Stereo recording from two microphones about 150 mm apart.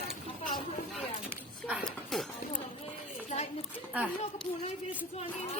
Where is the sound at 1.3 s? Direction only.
10° right (ahead or behind).